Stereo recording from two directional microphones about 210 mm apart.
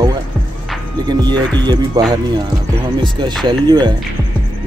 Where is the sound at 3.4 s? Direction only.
20° right (ahead or behind).